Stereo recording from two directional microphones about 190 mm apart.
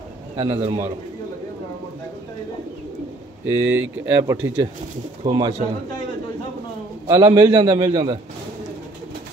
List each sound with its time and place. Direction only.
0.4 s a man's voice: 30° right (ahead or behind)
3.4 s speech: 10° right (ahead or behind)
7.1 s a man's voice: 25° right (ahead or behind)